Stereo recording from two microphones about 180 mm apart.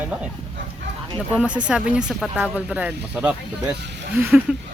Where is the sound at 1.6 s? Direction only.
5° right (ahead or behind).